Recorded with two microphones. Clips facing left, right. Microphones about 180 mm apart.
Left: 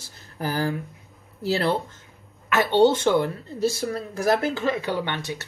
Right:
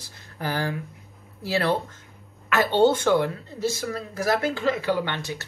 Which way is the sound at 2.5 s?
25° left (ahead or behind).